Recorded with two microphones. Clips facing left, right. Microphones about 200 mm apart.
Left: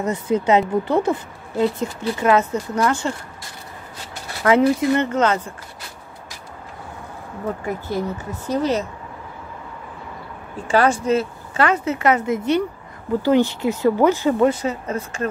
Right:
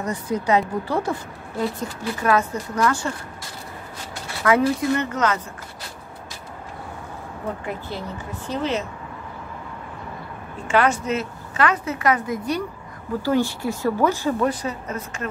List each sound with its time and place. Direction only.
0.0 s a woman's voice: 25° left (ahead or behind)
4.4 s a woman's voice: 30° left (ahead or behind)
8.5 s speech: 40° left (ahead or behind)
10.7 s a woman's voice: 35° left (ahead or behind)